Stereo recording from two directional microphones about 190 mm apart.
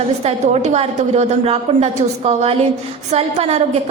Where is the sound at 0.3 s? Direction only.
35° right (ahead or behind).